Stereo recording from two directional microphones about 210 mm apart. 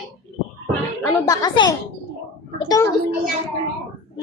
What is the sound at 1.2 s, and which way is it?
Speech, 15° left (ahead or behind).